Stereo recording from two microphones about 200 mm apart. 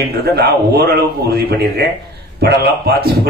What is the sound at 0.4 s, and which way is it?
A man's voice, 50° right (ahead or behind).